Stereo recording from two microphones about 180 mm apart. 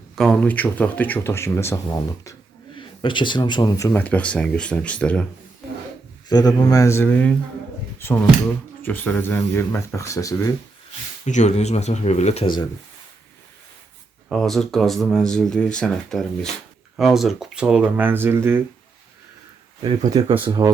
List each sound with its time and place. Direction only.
0.2 s speech: 5° left (ahead or behind)
2.7 s speech: 25° left (ahead or behind); by 5.2 s 5° left (ahead or behind)
6.2 s speech: 20° left (ahead or behind)
11.3 s speech: 40° left (ahead or behind)
14.3 s speech: centre (ahead or behind)
19.8 s speech: 30° right (ahead or behind)